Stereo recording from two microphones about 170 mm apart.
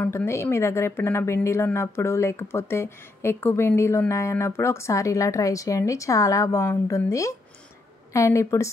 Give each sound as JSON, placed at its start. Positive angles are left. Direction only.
{"t": 0.0, "sound": "speech", "side_deg": 15}